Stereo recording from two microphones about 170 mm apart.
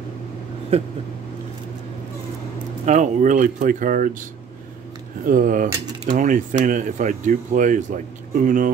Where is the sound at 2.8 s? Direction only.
45° right (ahead or behind).